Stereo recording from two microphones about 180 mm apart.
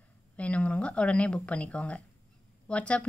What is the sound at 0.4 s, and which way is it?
Speech, 5° left (ahead or behind).